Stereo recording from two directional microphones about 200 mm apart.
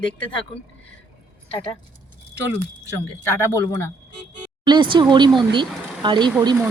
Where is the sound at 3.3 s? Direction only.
15° left (ahead or behind).